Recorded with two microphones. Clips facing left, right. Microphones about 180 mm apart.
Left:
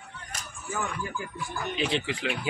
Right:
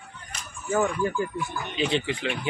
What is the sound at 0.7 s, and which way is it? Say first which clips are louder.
Speech: right 9 dB; 60° right (ahead or behind).